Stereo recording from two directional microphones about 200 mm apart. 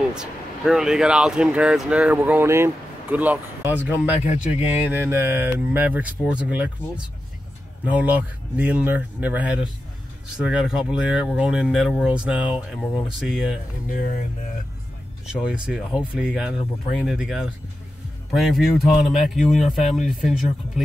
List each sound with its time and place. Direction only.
0.1 s speech: 5° right (ahead or behind)
7.8 s speech: 5° right (ahead or behind)
13.8 s speech: 45° left (ahead or behind)
15.2 s speech: 5° right (ahead or behind)